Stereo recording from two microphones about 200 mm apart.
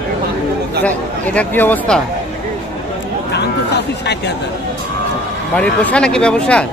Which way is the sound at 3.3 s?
55° left (ahead or behind).